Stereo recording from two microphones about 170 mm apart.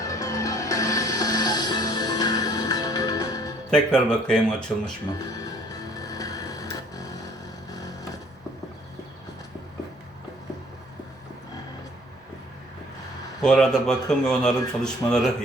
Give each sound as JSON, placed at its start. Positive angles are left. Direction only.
{"t": 0.0, "sound": "music", "side_deg": 20}
{"t": 3.7, "sound": "speech", "side_deg": 5}
{"t": 5.2, "sound": "music", "side_deg": 20}
{"t": 13.4, "sound": "speech", "side_deg": 5}